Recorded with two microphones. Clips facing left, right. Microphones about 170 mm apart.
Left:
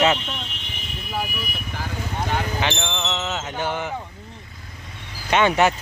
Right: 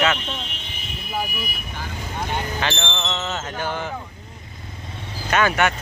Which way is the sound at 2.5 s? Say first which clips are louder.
Left 1 dB; 15° left (ahead or behind).